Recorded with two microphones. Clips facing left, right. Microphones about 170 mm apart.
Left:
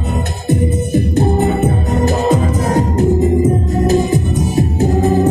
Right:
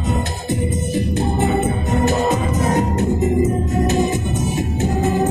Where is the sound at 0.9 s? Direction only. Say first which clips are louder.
Left 6 dB; 45° left (ahead or behind).